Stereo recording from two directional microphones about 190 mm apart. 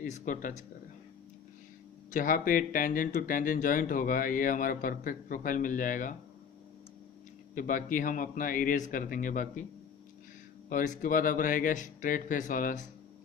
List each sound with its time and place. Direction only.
0.0 s speech: 45° left (ahead or behind)
2.0 s speech: 45° left (ahead or behind)
7.5 s speech: 45° left (ahead or behind)
10.7 s speech: 45° left (ahead or behind)